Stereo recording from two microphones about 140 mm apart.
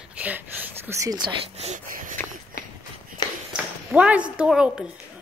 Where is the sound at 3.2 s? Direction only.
30° left (ahead or behind).